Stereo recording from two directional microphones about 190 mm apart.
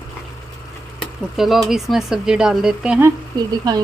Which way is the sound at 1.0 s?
Centre (ahead or behind).